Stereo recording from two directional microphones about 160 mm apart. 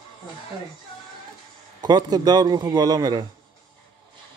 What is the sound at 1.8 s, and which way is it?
A man's voice, 25° right (ahead or behind).